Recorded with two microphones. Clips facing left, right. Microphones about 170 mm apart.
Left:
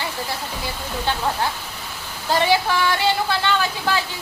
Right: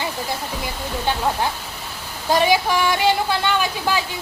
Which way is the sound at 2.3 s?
15° right (ahead or behind).